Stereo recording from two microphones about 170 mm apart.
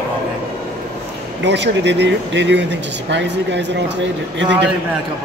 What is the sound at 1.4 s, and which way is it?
Speech, 90° right.